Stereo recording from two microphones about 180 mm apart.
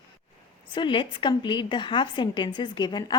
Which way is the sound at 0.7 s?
25° left (ahead or behind).